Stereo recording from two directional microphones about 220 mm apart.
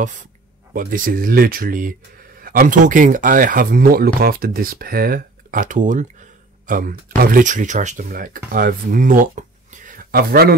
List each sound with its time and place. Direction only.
0.0 s speech: 35° right (ahead or behind)